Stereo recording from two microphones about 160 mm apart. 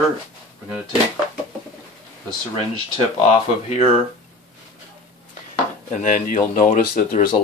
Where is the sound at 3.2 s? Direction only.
40° left (ahead or behind).